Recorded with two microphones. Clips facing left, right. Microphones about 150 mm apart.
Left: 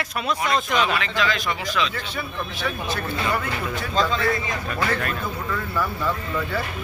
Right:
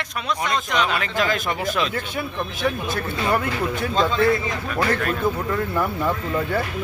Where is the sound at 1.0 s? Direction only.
50° right (ahead or behind).